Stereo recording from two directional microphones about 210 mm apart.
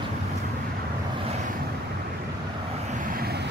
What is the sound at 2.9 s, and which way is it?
Vehicle, 40° right (ahead or behind).